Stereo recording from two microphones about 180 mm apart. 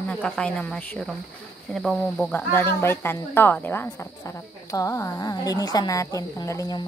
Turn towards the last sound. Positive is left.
turn(degrees=20)  # may be behind; listen again after turning